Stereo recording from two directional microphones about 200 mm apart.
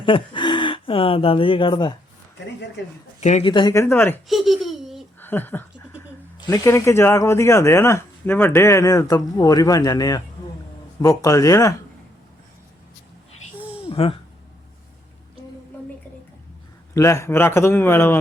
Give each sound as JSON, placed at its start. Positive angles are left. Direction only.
{"t": 0.0, "sound": "speech", "side_deg": 25}
{"t": 3.2, "sound": "speech", "side_deg": 35}
{"t": 4.3, "sound": "a sound", "side_deg": 0}
{"t": 5.2, "sound": "speech", "side_deg": 10}
{"t": 13.9, "sound": "a sound", "side_deg": 30}
{"t": 16.9, "sound": "speech", "side_deg": 15}